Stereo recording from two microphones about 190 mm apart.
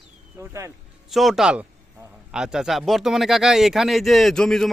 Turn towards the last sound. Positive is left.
turn(degrees=5)  # may be behind; listen again after turning